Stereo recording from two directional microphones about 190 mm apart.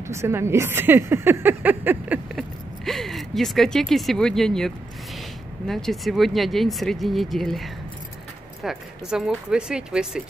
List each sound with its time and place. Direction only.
0.0 s speech: 15° right (ahead or behind)